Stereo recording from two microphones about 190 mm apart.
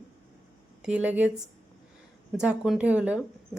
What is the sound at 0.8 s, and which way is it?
Speech, 5° right (ahead or behind).